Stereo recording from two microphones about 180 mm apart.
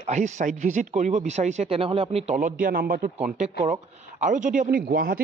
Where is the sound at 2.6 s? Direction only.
55° right (ahead or behind).